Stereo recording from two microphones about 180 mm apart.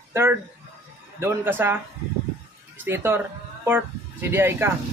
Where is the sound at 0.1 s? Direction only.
15° right (ahead or behind).